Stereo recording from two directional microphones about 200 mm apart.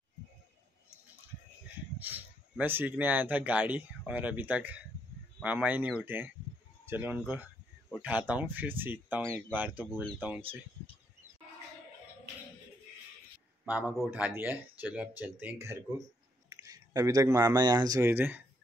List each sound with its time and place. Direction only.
2.0 s speech: 10° right (ahead or behind)
13.7 s speech: 10° right (ahead or behind)